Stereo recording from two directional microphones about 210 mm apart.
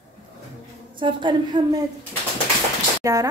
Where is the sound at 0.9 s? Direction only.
20° right (ahead or behind).